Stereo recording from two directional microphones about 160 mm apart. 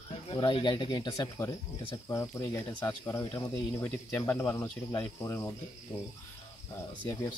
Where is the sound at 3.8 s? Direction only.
10° left (ahead or behind).